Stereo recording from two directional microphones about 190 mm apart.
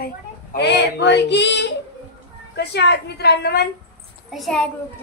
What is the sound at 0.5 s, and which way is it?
A woman's voice, 65° left (ahead or behind).